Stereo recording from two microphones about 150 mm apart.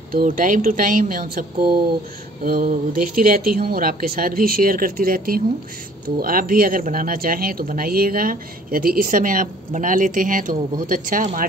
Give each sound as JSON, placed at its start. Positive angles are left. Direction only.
{"t": 0.1, "sound": "speech", "side_deg": -60}
{"t": 2.4, "sound": "speech", "side_deg": -70}